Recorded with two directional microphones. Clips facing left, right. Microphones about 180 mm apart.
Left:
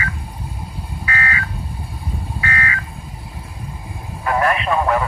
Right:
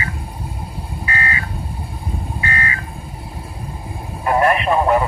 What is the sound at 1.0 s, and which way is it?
Telephone dialing, 25° right (ahead or behind).